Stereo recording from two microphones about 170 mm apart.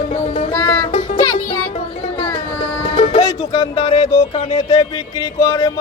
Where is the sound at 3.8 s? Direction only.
35° left (ahead or behind).